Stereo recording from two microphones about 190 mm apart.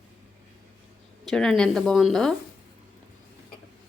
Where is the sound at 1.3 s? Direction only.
5° left (ahead or behind).